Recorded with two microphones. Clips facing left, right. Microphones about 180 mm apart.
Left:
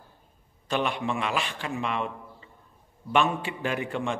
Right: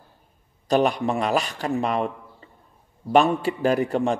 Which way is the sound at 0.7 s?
40° right (ahead or behind).